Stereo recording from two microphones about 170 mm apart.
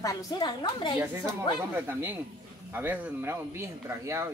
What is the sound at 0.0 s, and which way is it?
A woman's voice, 20° left (ahead or behind).